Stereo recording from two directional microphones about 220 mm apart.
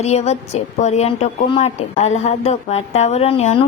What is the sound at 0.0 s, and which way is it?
Speech, 30° left (ahead or behind).